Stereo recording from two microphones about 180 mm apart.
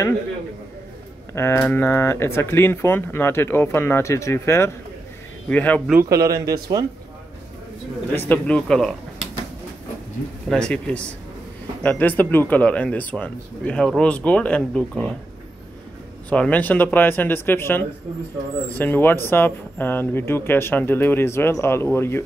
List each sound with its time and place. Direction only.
1.3 s speech: 15° left (ahead or behind)
5.9 s a man's voice: 15° right (ahead or behind)
8.1 s speech: 10° left (ahead or behind)
10.5 s speech: 5° left (ahead or behind)
16.3 s speech: 10° left (ahead or behind)